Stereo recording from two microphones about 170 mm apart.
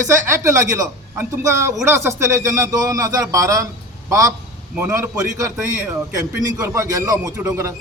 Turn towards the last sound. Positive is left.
turn(degrees=-15)  # may be behind; listen again after turning